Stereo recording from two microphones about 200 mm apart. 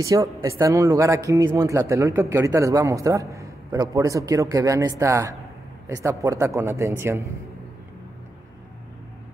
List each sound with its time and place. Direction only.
0.0 s speech: 15° right (ahead or behind)